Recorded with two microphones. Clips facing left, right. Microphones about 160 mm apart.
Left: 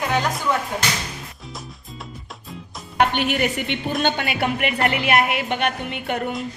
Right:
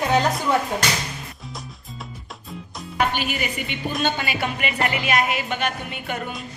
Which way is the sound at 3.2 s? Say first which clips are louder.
Left 5 dB; 70° left (ahead or behind).